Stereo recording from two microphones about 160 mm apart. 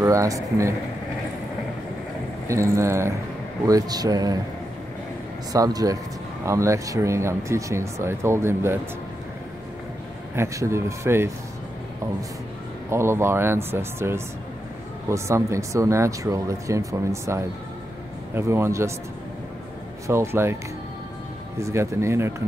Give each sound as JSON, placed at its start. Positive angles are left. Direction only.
{"t": 0.0, "sound": "speech", "side_deg": -20}
{"t": 2.4, "sound": "speech", "side_deg": -20}
{"t": 5.5, "sound": "speech", "side_deg": -25}
{"t": 10.3, "sound": "speech", "side_deg": -20}
{"t": 12.9, "sound": "speech", "side_deg": -15}
{"t": 20.1, "sound": "speech", "side_deg": -15}
{"t": 21.5, "sound": "speech", "side_deg": -20}